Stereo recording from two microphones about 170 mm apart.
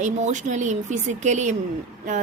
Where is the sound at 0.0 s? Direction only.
45° right (ahead or behind).